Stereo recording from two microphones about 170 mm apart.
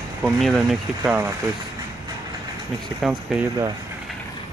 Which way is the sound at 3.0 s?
5° right (ahead or behind).